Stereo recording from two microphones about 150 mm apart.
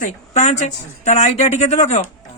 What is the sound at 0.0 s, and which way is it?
Speech, 55° left (ahead or behind).